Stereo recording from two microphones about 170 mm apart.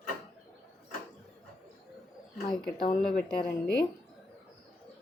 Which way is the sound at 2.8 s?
55° left (ahead or behind).